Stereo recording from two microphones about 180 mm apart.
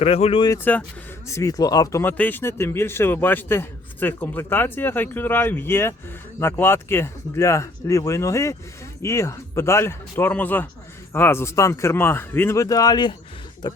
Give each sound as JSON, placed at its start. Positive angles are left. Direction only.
{"t": 0.0, "sound": "speech", "side_deg": 35}
{"t": 0.5, "sound": "speech", "side_deg": 10}